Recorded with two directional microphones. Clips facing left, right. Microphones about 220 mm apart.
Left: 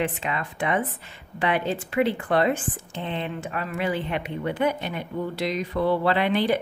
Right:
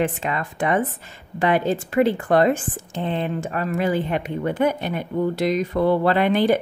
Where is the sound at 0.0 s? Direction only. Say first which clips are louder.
Right 4 dB; 45° right (ahead or behind).